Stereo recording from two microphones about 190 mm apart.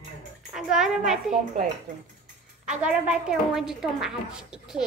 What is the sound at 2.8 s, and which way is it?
A woman's voice, 5° right (ahead or behind).